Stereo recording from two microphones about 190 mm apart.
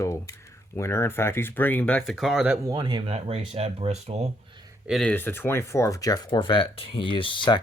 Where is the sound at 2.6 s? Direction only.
20° right (ahead or behind).